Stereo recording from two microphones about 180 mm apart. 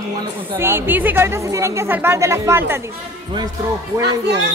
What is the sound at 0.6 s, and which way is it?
A woman's voice, 10° right (ahead or behind).